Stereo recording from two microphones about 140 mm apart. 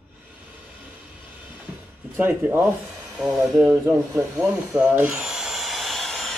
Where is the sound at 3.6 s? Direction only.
15° right (ahead or behind).